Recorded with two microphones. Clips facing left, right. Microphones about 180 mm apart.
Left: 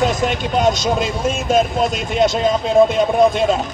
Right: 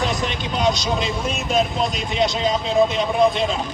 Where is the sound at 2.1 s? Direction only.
50° left (ahead or behind).